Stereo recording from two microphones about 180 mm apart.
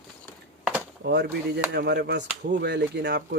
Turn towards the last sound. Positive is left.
turn(degrees=-65)  # may be behind; listen again after turning